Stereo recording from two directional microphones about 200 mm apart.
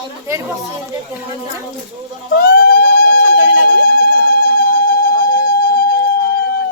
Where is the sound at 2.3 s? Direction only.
50° left (ahead or behind).